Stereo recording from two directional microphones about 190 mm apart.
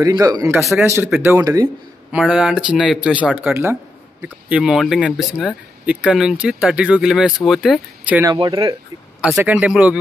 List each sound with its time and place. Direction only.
0.1 s speech: 20° right (ahead or behind)
0.6 s speech: centre (ahead or behind)
0.8 s speech: 15° right (ahead or behind)
2.1 s speech: 5° right (ahead or behind)
8.3 s speech: 20° right (ahead or behind)
9.2 s speech: 5° right (ahead or behind)